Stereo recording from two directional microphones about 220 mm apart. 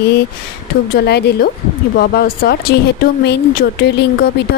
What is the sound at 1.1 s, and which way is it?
Speech, 50° left (ahead or behind).